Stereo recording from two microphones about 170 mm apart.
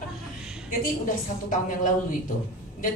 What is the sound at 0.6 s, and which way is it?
A woman's voice, 50° left (ahead or behind).